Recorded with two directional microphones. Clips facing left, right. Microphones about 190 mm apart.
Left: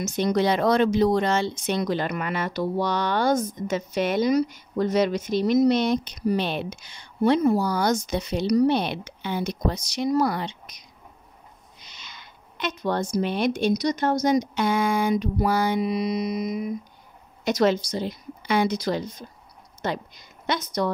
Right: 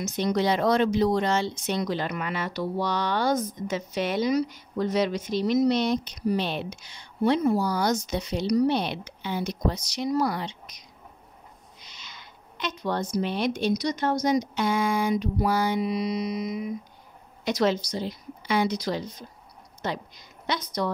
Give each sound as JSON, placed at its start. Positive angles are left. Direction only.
{"t": 0.0, "sound": "speech", "side_deg": 50}
{"t": 11.9, "sound": "speech", "side_deg": 60}